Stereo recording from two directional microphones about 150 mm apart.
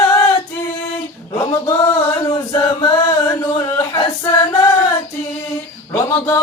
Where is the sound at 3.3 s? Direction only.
20° left (ahead or behind).